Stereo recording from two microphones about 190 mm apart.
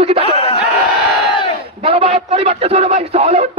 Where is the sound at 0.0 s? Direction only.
30° right (ahead or behind).